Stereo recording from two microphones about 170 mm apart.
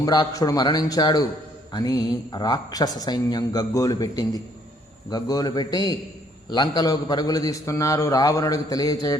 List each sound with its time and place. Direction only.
0.0 s a man's voice: 25° left (ahead or behind)